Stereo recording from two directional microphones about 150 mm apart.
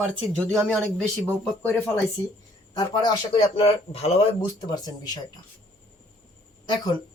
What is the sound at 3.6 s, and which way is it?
Speech, 45° left (ahead or behind).